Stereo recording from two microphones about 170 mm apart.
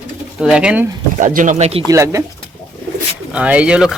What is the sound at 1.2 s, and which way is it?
Speech, 50° right (ahead or behind).